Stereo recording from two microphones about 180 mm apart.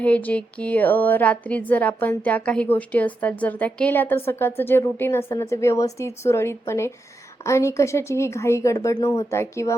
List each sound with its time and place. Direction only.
0.0 s speech: 10° left (ahead or behind)